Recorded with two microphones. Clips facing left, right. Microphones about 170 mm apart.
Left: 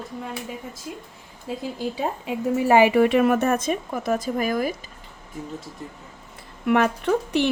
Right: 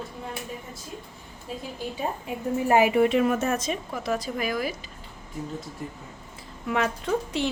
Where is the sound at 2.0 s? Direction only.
90° left; by 4.7 s 45° left (ahead or behind).